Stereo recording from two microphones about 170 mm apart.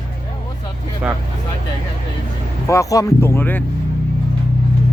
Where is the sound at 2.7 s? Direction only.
20° left (ahead or behind).